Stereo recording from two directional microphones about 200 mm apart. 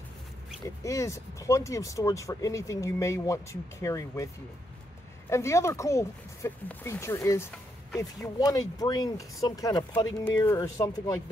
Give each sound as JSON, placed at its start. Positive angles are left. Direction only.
{"t": 0.8, "sound": "speech", "side_deg": 15}
{"t": 5.3, "sound": "speech", "side_deg": 15}